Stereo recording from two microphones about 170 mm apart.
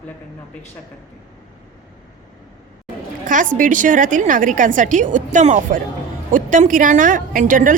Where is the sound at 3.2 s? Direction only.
50° right (ahead or behind).